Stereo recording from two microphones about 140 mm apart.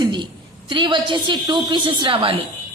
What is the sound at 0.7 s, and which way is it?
A woman's voice, 35° right (ahead or behind).